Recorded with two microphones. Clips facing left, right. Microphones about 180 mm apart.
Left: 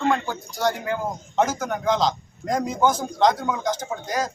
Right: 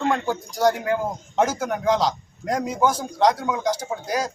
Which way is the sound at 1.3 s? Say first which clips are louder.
Right 1 dB; 10° right (ahead or behind).